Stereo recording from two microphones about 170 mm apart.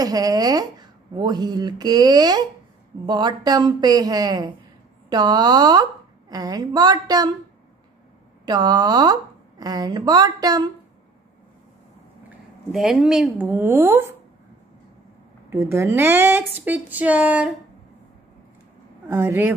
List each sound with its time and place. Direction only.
0.0 s speech: 20° right (ahead or behind)
8.5 s speech: 25° right (ahead or behind)
12.7 s speech: 5° right (ahead or behind)
15.5 s speech: 15° right (ahead or behind)
19.0 s speech: 15° right (ahead or behind)